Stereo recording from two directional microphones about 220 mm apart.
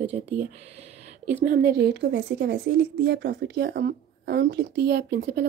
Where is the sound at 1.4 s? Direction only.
45° right (ahead or behind).